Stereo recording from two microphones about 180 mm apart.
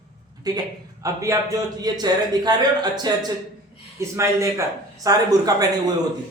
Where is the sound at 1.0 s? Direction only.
15° right (ahead or behind).